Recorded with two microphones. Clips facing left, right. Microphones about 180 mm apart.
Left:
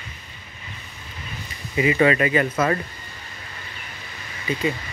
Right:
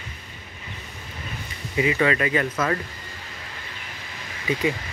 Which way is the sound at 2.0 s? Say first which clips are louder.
Left 6 dB; 5° left (ahead or behind).